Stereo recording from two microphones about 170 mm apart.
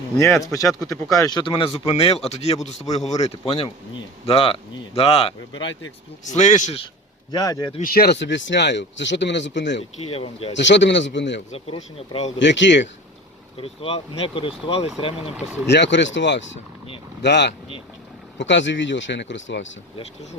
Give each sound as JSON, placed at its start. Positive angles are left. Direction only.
{"t": 0.2, "sound": "speech", "side_deg": 15}
{"t": 6.2, "sound": "speech", "side_deg": 45}
{"t": 7.3, "sound": "speech", "side_deg": 20}
{"t": 7.9, "sound": "speech", "side_deg": 65}
{"t": 10.0, "sound": "speech", "side_deg": 35}
{"t": 10.5, "sound": "speech", "side_deg": 90}
{"t": 11.5, "sound": "speech", "side_deg": 35}
{"t": 12.4, "sound": "speech", "side_deg": 90}
{"t": 13.6, "sound": "speech", "side_deg": 35}
{"t": 15.6, "sound": "speech", "side_deg": 90}